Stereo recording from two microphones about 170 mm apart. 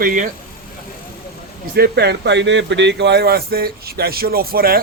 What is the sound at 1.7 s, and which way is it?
Speech, 70° right (ahead or behind).